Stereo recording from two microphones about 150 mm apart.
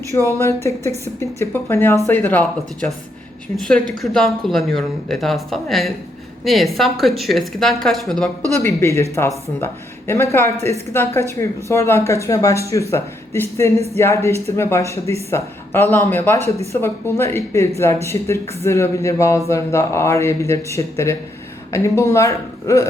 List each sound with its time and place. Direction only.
0.3 s a woman's voice: 20° left (ahead or behind); by 8.3 s centre (ahead or behind)
8.6 s speech: 20° left (ahead or behind)